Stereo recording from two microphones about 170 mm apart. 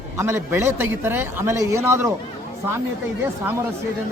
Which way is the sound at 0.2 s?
15° right (ahead or behind).